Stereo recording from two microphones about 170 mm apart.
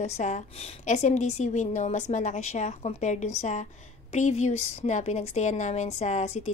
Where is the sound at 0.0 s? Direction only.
45° left (ahead or behind).